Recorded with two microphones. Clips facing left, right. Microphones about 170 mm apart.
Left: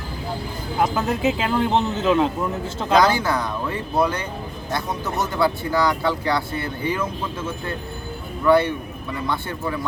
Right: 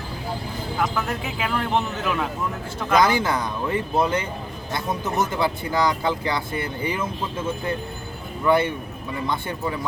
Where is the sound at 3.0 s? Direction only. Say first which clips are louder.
Left 1 dB; 20° right (ahead or behind).